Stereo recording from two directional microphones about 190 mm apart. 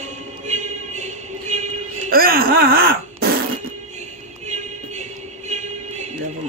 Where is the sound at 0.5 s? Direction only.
40° right (ahead or behind).